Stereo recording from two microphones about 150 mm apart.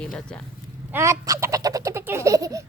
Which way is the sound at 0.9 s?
20° right (ahead or behind).